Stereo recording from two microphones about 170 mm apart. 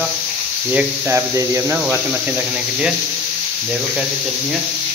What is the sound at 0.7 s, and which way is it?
A man's voice, 10° right (ahead or behind).